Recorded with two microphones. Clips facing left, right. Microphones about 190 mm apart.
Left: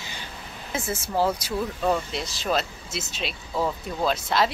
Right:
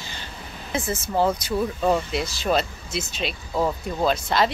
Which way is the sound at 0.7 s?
5° left (ahead or behind).